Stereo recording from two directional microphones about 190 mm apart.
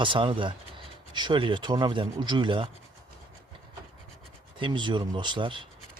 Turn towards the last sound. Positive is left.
turn(degrees=-25)  # may be behind; listen again after turning